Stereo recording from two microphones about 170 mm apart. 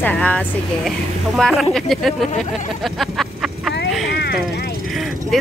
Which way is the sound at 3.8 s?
Centre (ahead or behind).